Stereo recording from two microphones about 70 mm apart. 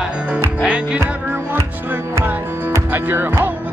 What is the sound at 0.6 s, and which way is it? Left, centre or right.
Music, centre.